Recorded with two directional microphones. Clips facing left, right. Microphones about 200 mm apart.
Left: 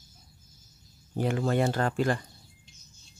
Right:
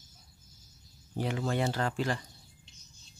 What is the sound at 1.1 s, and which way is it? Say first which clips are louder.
Speech: left 5 dB; 50° left (ahead or behind).